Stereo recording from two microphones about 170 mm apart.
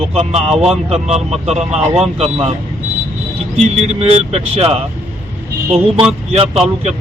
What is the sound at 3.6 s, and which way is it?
Speech, 40° right (ahead or behind).